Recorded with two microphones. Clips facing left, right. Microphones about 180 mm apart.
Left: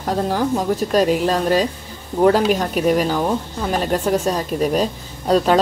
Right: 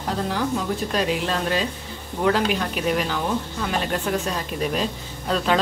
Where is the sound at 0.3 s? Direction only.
45° left (ahead or behind).